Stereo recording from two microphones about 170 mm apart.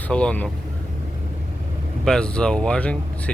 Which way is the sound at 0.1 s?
5° left (ahead or behind).